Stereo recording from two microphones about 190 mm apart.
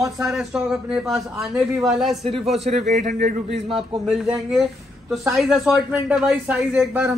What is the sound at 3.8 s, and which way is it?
A man's voice, centre (ahead or behind).